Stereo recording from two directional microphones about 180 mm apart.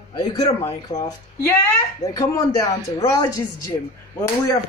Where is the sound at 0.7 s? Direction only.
20° left (ahead or behind).